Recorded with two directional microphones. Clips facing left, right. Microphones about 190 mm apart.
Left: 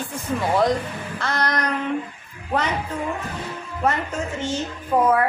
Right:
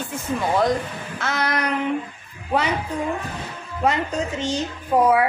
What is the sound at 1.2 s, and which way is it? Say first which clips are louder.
Speech: even; 5° right (ahead or behind).